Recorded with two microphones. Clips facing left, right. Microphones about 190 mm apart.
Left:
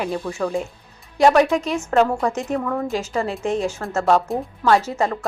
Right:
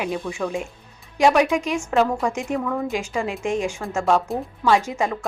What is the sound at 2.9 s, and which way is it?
Speech, 10° right (ahead or behind).